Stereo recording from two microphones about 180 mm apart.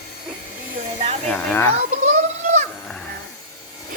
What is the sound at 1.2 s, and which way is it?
Speech, 10° left (ahead or behind).